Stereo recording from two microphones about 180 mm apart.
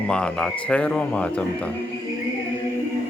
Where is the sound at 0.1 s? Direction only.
5° left (ahead or behind).